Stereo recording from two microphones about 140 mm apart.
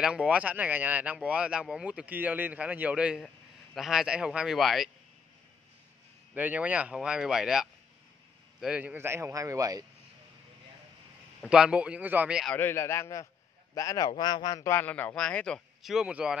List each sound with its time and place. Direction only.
0.0 s speech: 5° right (ahead or behind)
6.3 s speech: 10° right (ahead or behind)
11.4 s speech: 5° right (ahead or behind)
12.4 s a man's voice: 15° left (ahead or behind); by 16.3 s 5° right (ahead or behind)